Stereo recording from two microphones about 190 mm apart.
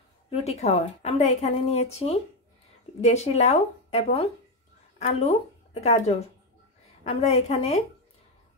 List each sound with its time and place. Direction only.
0.3 s a woman's voice: 35° left (ahead or behind)